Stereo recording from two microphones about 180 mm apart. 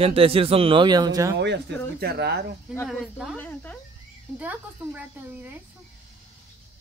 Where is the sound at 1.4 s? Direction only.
65° right (ahead or behind).